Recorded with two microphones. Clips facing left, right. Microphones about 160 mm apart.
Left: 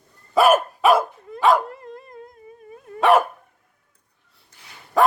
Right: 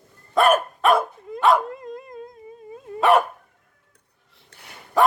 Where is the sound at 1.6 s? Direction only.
20° right (ahead or behind).